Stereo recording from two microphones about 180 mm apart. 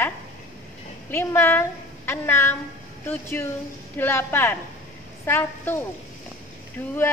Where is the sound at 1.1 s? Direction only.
15° left (ahead or behind).